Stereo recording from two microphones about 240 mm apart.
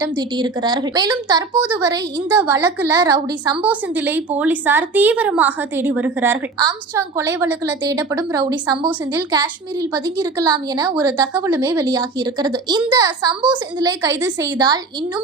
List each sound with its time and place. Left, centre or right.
0.2 s a woman's voice: centre
3.6 s a woman's voice: centre
10.9 s a woman's voice: centre